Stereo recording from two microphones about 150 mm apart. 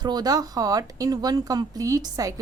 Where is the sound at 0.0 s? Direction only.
25° right (ahead or behind).